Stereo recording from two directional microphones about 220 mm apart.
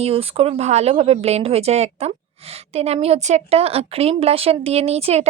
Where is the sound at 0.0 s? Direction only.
25° right (ahead or behind).